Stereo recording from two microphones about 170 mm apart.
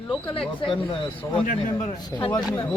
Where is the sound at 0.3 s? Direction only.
30° left (ahead or behind).